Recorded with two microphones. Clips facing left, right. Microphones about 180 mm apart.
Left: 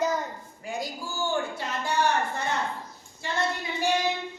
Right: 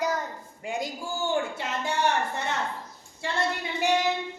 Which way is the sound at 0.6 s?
25° right (ahead or behind).